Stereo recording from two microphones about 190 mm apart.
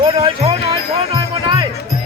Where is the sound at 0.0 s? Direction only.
30° right (ahead or behind).